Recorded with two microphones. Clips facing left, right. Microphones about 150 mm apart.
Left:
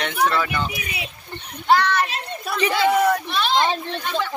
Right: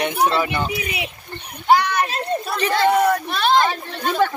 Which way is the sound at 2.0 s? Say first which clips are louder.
Right 4 dB; 40° right (ahead or behind).